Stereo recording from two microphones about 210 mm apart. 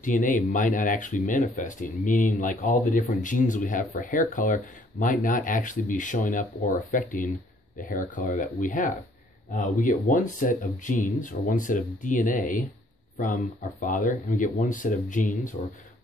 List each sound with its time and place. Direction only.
0.0 s speech: 40° left (ahead or behind)